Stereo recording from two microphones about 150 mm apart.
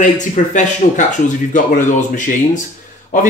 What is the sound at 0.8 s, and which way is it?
Speech, 45° left (ahead or behind).